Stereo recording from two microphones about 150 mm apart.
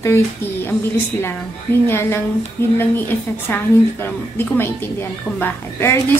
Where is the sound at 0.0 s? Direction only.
15° left (ahead or behind).